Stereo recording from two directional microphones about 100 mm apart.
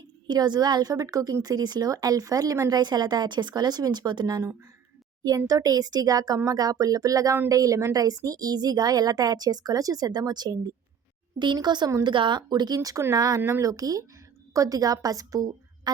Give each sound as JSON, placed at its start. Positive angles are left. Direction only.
{"t": 0.3, "sound": "a woman's voice", "side_deg": -45}
{"t": 5.5, "sound": "a woman's voice", "side_deg": -40}